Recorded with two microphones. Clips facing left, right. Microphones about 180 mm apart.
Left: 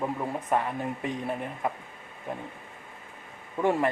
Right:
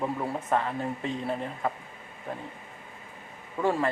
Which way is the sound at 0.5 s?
15° left (ahead or behind).